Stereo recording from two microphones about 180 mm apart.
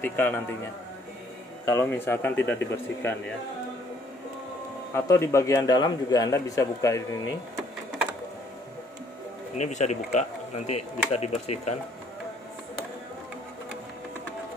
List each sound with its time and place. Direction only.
0.0 s a man's voice: 10° left (ahead or behind)
1.7 s a man's voice: 15° left (ahead or behind)
4.9 s a man's voice: 15° left (ahead or behind)
9.6 s speech: 40° left (ahead or behind)